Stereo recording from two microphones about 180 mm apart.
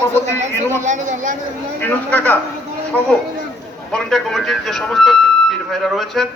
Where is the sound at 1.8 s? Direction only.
10° left (ahead or behind).